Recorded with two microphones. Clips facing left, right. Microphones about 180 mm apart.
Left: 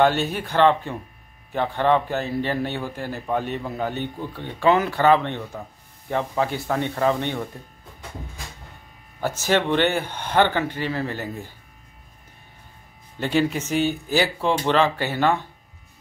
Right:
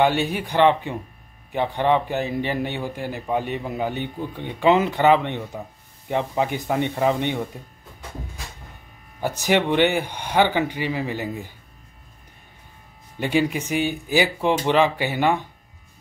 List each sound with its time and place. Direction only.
0.0 s a man's voice: 15° right (ahead or behind)
9.2 s a man's voice: 15° right (ahead or behind)
13.2 s a man's voice: 15° right (ahead or behind)